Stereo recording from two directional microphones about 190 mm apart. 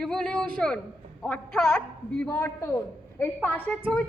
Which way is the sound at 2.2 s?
15° left (ahead or behind).